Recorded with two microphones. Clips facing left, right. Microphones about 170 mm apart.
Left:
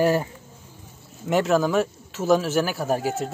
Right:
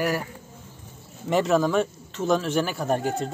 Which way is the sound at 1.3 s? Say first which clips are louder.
Left 1 dB; centre (ahead or behind).